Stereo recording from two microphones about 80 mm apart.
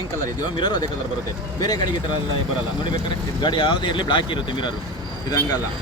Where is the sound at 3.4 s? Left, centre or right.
Left.